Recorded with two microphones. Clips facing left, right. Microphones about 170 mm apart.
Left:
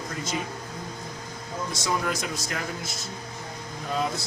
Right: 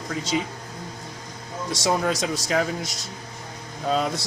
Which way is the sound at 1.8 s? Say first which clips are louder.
Right 6 dB; 85° right.